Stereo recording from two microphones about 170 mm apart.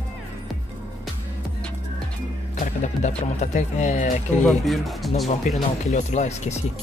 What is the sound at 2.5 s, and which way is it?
Speech, 45° left (ahead or behind).